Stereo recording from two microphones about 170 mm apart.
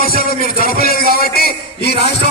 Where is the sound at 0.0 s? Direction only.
60° left (ahead or behind).